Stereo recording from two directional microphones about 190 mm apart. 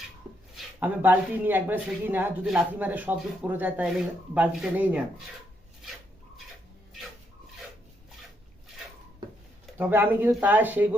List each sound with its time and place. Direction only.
0.5 s speech: 10° right (ahead or behind)
9.2 s a sound: 25° right (ahead or behind)
9.7 s speech: 10° right (ahead or behind)